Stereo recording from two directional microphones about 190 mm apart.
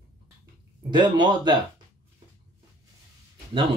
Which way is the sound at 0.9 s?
25° right (ahead or behind).